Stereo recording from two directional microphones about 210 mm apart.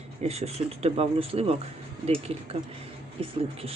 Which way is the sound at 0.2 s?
30° right (ahead or behind).